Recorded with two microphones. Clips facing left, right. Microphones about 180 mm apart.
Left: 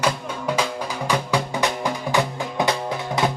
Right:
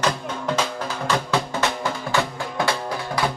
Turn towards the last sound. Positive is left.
turn(degrees=20)  # may be behind; listen again after turning